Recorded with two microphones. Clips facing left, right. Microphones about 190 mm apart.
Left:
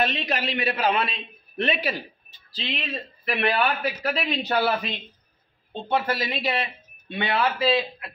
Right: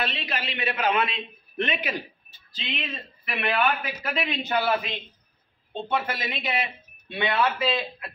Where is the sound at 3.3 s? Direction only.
35° left (ahead or behind).